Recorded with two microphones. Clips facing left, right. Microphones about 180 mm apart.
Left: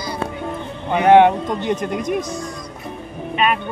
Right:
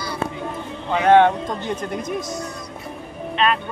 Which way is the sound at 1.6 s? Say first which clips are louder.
Left 4 dB; 65° left (ahead or behind).